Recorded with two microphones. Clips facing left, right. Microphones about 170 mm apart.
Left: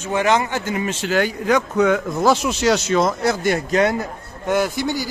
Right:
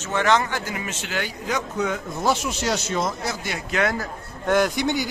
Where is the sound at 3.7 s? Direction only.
30° left (ahead or behind).